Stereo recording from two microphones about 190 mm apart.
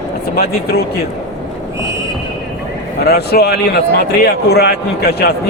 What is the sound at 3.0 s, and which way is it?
A man's voice, 55° left (ahead or behind).